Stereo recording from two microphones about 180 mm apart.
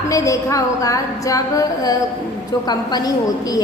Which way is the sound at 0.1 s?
20° left (ahead or behind).